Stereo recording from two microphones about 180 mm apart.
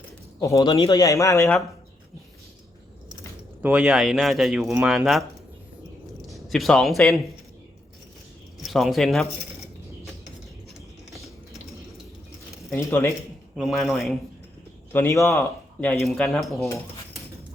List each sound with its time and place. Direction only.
0.3 s speech: 15° left (ahead or behind)
3.6 s speech: 5° right (ahead or behind)
6.3 s a man's voice: centre (ahead or behind)
8.6 s speech: centre (ahead or behind)
12.9 s speech: 10° left (ahead or behind)
13.6 s speech: centre (ahead or behind)
14.9 s speech: 15° left (ahead or behind)